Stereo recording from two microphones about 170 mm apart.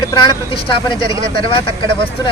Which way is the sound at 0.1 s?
25° left (ahead or behind).